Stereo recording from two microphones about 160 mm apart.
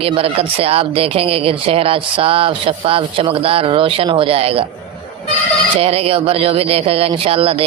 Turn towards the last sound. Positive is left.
turn(degrees=-35)  # may be behind; listen again after turning